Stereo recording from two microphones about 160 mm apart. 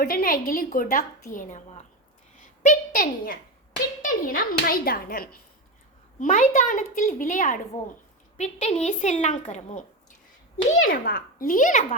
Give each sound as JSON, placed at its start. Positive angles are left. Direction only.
{"t": 0.0, "sound": "a woman's voice", "side_deg": 65}
{"t": 2.6, "sound": "a woman's voice", "side_deg": 60}
{"t": 6.1, "sound": "a woman's voice", "side_deg": 50}
{"t": 10.8, "sound": "a woman's voice", "side_deg": 65}